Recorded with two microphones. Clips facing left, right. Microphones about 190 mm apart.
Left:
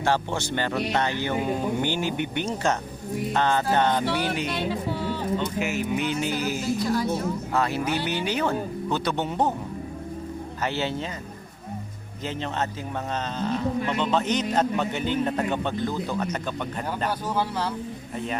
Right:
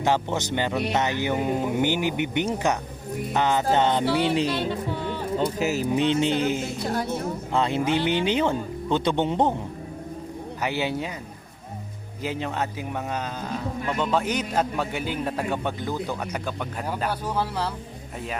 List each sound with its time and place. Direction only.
0.0 s speech: 20° right (ahead or behind)
4.5 s speech: centre (ahead or behind)
5.4 s speech: 40° right (ahead or behind)
6.8 s a woman's voice: 55° right (ahead or behind)
7.5 s speech: 25° right (ahead or behind)
10.6 s speech: 15° right (ahead or behind)
12.2 s speech: 10° right (ahead or behind)